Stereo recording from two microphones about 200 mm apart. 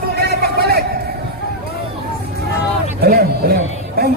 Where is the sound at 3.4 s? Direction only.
50° right (ahead or behind).